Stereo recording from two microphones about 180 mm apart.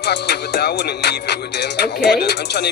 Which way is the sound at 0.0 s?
65° left (ahead or behind).